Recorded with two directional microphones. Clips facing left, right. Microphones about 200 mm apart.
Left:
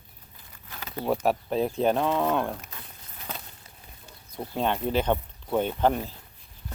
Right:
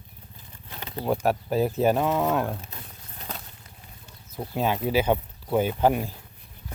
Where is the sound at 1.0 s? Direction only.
5° right (ahead or behind).